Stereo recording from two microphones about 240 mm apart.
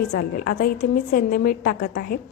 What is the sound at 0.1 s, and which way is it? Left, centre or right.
A woman's voice, left.